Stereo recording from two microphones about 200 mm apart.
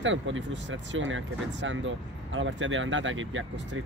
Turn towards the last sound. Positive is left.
turn(degrees=-75)  # may be behind; listen again after turning